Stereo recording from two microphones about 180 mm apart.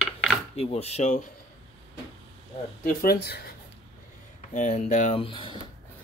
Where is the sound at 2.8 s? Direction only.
60° left (ahead or behind).